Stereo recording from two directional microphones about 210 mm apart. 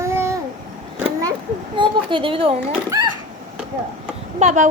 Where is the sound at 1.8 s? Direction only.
25° right (ahead or behind).